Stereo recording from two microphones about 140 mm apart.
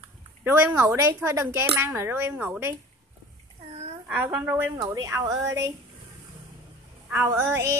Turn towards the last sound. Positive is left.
turn(degrees=-15)  # may be behind; listen again after turning